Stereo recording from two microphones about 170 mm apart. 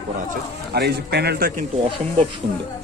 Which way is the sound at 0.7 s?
70° right (ahead or behind).